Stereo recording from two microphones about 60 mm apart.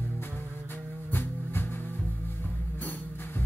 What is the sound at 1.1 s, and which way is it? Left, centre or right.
Music, left.